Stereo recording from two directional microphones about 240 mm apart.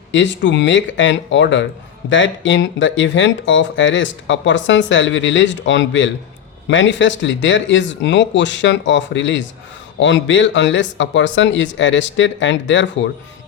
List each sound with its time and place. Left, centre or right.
0.1 s speech: left